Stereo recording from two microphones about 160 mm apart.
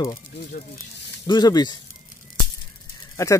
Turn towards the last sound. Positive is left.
turn(degrees=20)  # may be behind; listen again after turning